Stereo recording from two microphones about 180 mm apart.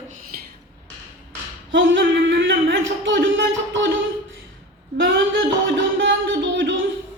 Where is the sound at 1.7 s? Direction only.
90° right.